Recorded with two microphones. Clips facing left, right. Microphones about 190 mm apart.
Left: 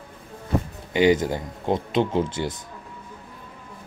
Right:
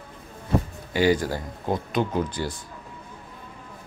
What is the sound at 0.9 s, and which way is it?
Speech, 20° left (ahead or behind).